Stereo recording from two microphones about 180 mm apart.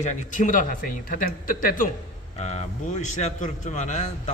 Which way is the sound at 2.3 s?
35° left (ahead or behind).